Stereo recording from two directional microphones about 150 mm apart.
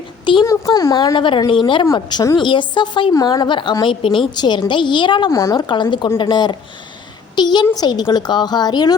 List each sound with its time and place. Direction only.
0.4 s a woman's voice: 20° left (ahead or behind)